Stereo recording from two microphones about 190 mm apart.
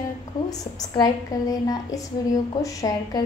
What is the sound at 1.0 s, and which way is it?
A woman's voice, 20° left (ahead or behind).